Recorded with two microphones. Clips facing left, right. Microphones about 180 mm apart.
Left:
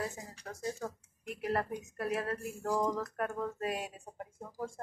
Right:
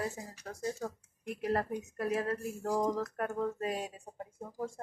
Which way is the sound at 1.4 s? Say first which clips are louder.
Right 1 dB; 30° right (ahead or behind).